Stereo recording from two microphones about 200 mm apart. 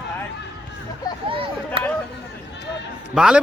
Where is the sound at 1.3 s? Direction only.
25° right (ahead or behind).